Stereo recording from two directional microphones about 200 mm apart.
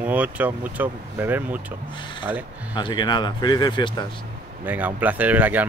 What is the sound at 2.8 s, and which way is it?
Speech, 25° left (ahead or behind).